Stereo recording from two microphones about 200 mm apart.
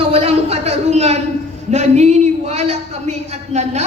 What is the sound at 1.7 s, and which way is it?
A woman's voice, 35° right (ahead or behind).